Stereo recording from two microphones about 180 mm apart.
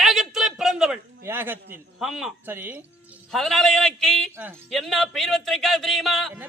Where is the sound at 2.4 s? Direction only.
10° right (ahead or behind).